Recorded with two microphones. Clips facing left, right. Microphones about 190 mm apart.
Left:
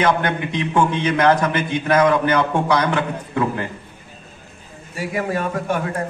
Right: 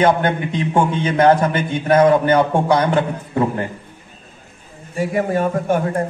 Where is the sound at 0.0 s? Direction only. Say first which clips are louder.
Right 3 dB; 30° right (ahead or behind).